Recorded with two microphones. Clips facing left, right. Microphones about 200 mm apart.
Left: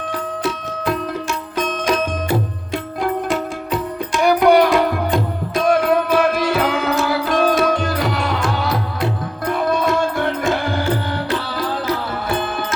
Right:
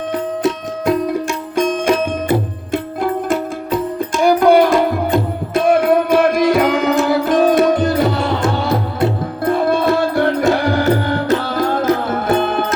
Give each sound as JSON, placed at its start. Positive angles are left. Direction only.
{"t": 0.1, "sound": "music", "side_deg": -20}